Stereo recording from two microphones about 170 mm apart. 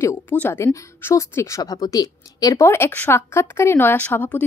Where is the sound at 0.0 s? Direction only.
10° left (ahead or behind).